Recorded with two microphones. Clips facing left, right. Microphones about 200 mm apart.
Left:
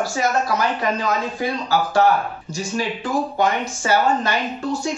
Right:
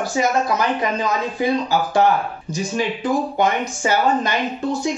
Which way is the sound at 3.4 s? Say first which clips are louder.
Right 1 dB; 20° right (ahead or behind).